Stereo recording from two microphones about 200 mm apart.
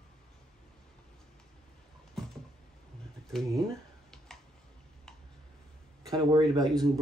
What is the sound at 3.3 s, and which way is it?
Speech, centre (ahead or behind).